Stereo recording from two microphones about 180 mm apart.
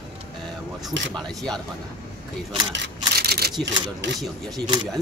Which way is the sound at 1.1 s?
5° left (ahead or behind).